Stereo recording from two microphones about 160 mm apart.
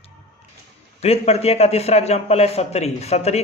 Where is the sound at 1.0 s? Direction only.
40° left (ahead or behind).